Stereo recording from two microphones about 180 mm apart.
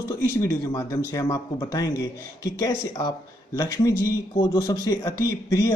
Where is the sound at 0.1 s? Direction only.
15° left (ahead or behind).